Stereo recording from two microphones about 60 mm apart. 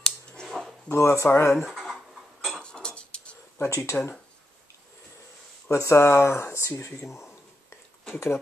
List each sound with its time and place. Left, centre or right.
0.0 s scissors: centre
0.9 s speech: left
1.3 s speech: left
1.6 s a sound: centre
2.6 s tick-tock: centre
3.5 s speech: left
5.7 s speech: left
8.1 s speech: left